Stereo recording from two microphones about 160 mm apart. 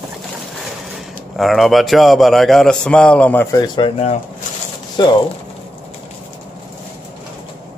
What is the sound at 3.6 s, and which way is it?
Speech, 30° left (ahead or behind).